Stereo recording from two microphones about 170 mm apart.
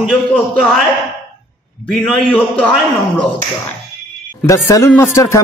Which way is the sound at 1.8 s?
Centre (ahead or behind).